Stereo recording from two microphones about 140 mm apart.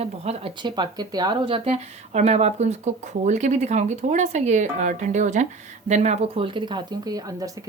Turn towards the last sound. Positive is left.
turn(degrees=-25)  # may be behind; listen again after turning